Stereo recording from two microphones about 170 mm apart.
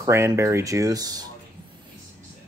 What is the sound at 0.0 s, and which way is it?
Speech, 20° right (ahead or behind).